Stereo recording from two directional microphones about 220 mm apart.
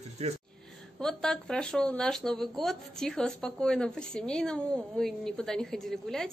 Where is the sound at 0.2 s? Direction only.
30° right (ahead or behind).